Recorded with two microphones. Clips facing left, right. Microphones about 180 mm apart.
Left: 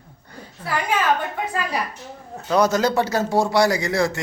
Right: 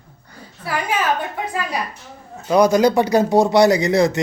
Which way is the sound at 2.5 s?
15° right (ahead or behind).